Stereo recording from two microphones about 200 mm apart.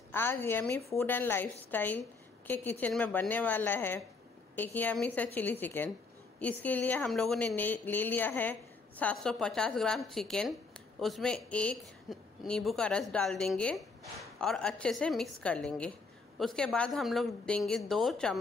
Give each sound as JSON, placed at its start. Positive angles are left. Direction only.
{"t": 0.1, "sound": "a woman's voice", "side_deg": 10}